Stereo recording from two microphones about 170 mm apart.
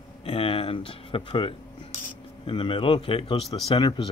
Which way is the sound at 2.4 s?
30° left (ahead or behind).